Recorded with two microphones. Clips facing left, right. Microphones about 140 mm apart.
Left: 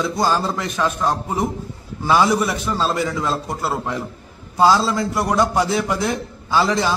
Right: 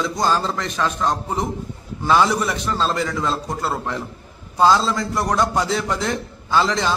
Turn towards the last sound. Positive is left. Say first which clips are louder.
# left 1 dB
turn(degrees=5)  # may be behind; listen again after turning